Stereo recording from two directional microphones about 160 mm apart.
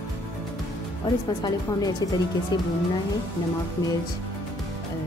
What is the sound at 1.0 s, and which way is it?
A woman's voice, 25° left (ahead or behind).